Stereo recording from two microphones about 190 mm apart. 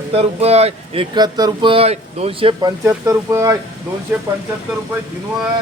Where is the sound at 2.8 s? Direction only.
10° right (ahead or behind).